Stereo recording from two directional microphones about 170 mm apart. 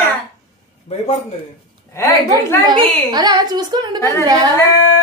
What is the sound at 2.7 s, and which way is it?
A woman's voice, 25° right (ahead or behind).